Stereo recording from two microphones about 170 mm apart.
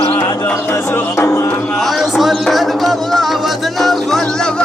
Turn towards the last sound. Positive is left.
turn(degrees=5)  # may be behind; listen again after turning